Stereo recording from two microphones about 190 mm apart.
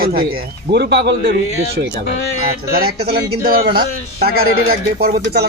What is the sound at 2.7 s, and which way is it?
A man's voice, 50° right (ahead or behind).